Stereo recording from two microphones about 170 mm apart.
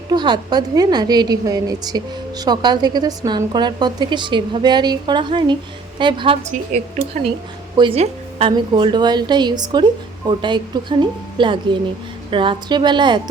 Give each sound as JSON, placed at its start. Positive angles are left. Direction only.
{"t": 0.1, "sound": "a woman's voice", "side_deg": -25}
{"t": 7.8, "sound": "a woman's voice", "side_deg": -30}